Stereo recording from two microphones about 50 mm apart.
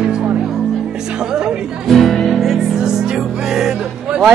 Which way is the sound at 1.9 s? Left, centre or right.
Centre.